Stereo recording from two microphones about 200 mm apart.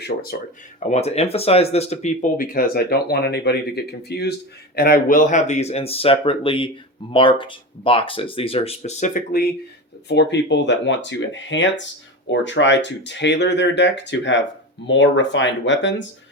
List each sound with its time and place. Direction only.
0.0 s speech: 50° left (ahead or behind)
0.9 s speech: 30° left (ahead or behind)
10.1 s speech: 60° left (ahead or behind)